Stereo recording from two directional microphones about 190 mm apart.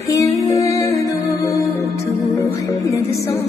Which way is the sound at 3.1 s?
15° left (ahead or behind).